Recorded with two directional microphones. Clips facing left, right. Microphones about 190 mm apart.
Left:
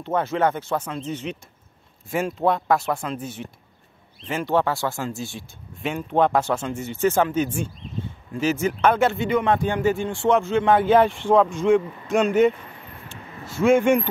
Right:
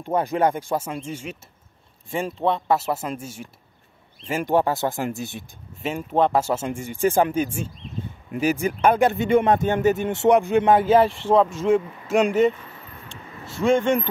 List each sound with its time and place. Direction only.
0.0 s speech: 15° right (ahead or behind)
2.0 s speech: centre (ahead or behind); by 5.4 s 20° right (ahead or behind)
5.8 s speech: centre (ahead or behind)
9.2 s speech: 45° right (ahead or behind)
10.0 s speech: 20° right (ahead or behind); by 12.5 s centre (ahead or behind)
13.1 s a sound: 5° left (ahead or behind)